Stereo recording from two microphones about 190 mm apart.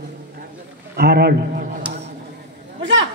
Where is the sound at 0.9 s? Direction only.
55° right (ahead or behind).